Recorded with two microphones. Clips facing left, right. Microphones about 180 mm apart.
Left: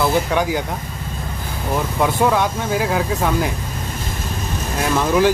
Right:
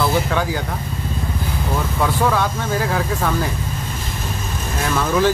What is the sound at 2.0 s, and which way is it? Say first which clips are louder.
Speech: left 2 dB; 15° left (ahead or behind).